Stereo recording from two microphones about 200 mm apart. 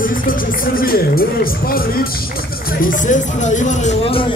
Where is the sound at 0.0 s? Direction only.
45° left (ahead or behind).